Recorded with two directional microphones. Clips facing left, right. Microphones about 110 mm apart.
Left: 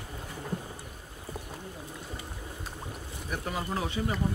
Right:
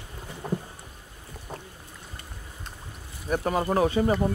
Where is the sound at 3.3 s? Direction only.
55° right (ahead or behind).